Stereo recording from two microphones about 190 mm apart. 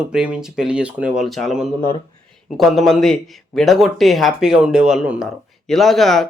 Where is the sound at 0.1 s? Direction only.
5° right (ahead or behind).